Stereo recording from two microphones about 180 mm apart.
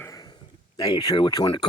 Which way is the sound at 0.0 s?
20° left (ahead or behind).